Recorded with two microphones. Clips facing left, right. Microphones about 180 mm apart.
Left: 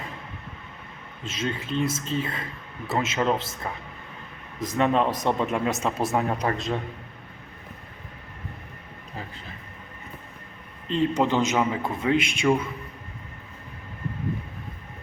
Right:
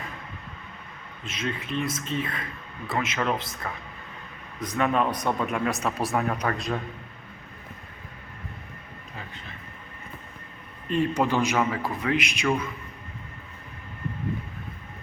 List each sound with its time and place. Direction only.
1.2 s speech: 30° left (ahead or behind)
10.8 s speech: 20° left (ahead or behind)